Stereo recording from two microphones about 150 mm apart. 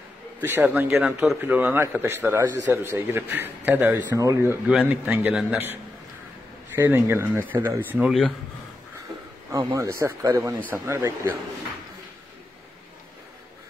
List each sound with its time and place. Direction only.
0.4 s a man's voice: 15° right (ahead or behind)
4.6 s a man's voice: 10° right (ahead or behind)
6.7 s a man's voice: 15° right (ahead or behind)
9.7 s a man's voice: 20° right (ahead or behind)